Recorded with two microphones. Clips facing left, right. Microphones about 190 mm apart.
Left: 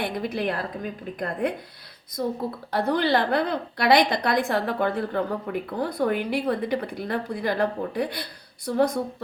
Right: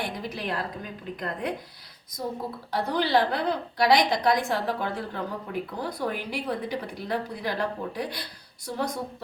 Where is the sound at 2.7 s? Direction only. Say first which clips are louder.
Left 4 dB; 55° left (ahead or behind).